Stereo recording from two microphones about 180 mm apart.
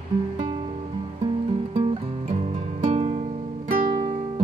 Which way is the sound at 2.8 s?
35° right (ahead or behind).